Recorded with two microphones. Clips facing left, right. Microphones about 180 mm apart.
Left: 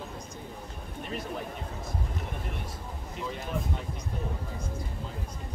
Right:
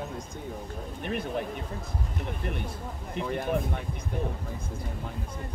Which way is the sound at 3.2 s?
60° right (ahead or behind).